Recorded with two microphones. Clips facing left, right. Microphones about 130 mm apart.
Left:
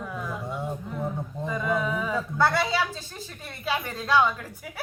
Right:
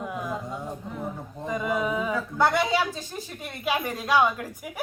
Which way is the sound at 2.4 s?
15° right (ahead or behind).